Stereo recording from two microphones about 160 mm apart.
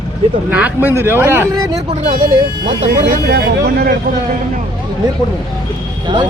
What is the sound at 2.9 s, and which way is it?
Speech, 80° right.